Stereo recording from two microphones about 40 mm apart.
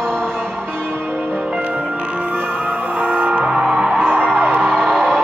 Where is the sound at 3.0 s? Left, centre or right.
Right.